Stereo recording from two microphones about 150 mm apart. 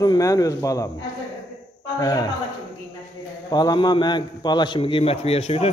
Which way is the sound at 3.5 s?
30° left (ahead or behind).